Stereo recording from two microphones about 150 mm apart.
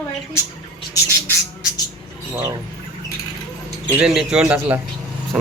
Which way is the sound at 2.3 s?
25° right (ahead or behind).